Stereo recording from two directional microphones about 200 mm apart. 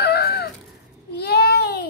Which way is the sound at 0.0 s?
50° left (ahead or behind).